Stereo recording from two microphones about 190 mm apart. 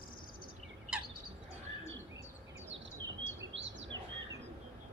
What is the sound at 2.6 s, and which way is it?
Chirp, 75° right (ahead or behind).